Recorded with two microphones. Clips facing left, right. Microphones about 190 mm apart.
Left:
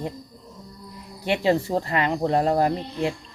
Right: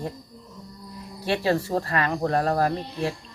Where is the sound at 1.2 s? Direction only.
20° left (ahead or behind).